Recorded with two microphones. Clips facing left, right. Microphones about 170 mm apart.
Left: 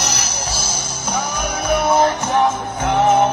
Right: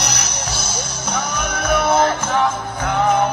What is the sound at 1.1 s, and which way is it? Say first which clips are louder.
Music: left 1 dB; 10° left (ahead or behind).